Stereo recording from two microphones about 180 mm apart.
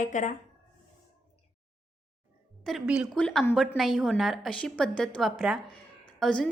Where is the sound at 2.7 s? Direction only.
Centre (ahead or behind).